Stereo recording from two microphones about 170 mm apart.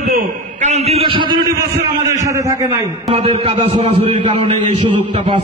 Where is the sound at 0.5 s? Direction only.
40° right (ahead or behind); by 2.9 s 15° right (ahead or behind).